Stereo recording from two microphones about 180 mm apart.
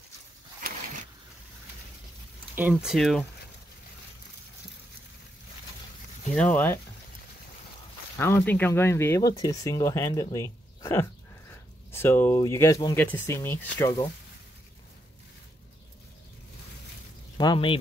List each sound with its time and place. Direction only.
2.5 s speech: 10° right (ahead or behind)
6.3 s speech: 10° left (ahead or behind)
8.2 s speech: 10° left (ahead or behind)
10.3 s a sound: 15° left (ahead or behind)
11.5 s speech: 15° left (ahead or behind)
17.4 s speech: 25° left (ahead or behind)